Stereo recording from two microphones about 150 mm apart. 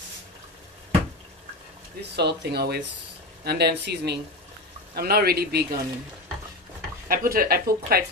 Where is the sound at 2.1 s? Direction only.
90° right.